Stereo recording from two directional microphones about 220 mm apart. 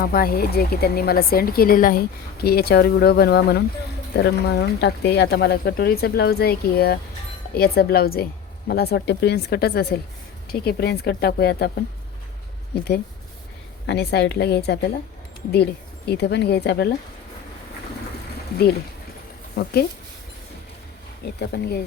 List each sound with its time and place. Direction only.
0.0 s speech: 45° left (ahead or behind)
13.8 s speech: 50° left (ahead or behind)
21.3 s speech: 50° left (ahead or behind)